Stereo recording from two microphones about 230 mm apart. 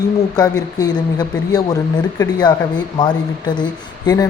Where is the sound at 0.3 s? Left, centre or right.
Centre.